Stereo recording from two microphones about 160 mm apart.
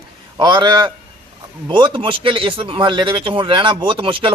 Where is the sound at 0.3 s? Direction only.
30° right (ahead or behind).